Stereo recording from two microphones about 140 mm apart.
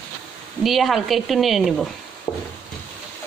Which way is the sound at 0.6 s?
Centre (ahead or behind).